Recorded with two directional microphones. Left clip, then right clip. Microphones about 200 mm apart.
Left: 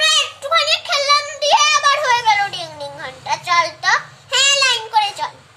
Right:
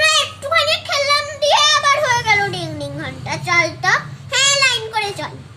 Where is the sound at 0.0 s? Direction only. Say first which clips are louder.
Even; 25° left (ahead or behind).